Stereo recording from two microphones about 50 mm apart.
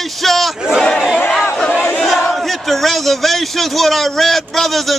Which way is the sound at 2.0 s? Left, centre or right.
Centre.